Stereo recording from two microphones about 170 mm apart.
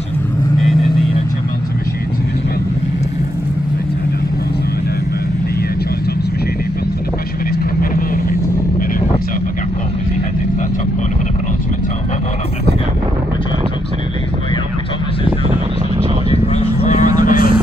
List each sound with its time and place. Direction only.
7.5 s vehicle: 60° left (ahead or behind)
16.3 s a sound: 40° left (ahead or behind)
17.2 s vehicle: 50° left (ahead or behind)